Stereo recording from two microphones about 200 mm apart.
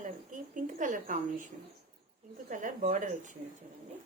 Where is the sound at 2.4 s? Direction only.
40° right (ahead or behind).